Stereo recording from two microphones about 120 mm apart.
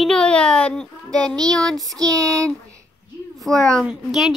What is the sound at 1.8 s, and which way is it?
Child singing, 30° right (ahead or behind).